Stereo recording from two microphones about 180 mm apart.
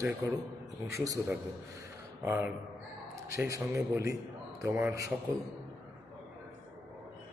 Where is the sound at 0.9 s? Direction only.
15° right (ahead or behind).